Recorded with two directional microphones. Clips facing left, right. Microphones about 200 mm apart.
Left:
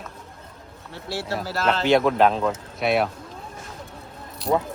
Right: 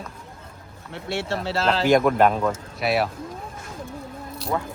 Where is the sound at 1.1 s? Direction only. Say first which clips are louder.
Right 2 dB; 25° right (ahead or behind).